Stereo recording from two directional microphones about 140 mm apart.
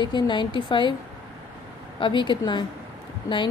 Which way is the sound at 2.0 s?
35° left (ahead or behind).